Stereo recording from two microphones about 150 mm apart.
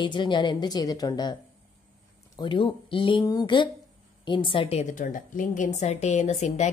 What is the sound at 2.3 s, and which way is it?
A woman's voice, 35° left (ahead or behind).